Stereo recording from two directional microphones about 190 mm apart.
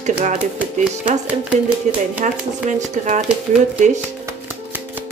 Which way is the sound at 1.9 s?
40° right (ahead or behind).